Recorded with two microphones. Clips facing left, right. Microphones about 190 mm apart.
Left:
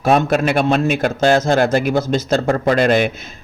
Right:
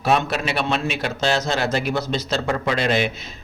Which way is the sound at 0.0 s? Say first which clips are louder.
Left 6 dB; 50° left (ahead or behind).